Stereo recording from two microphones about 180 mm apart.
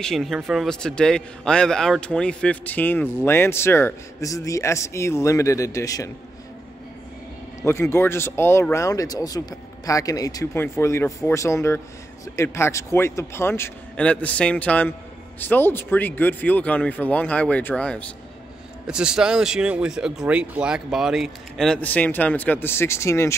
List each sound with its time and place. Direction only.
0.0 s a man's voice: centre (ahead or behind); by 6.0 s 20° left (ahead or behind)
7.6 s a man's voice: 15° left (ahead or behind)
18.9 s speech: 5° right (ahead or behind); by 23.3 s 15° left (ahead or behind)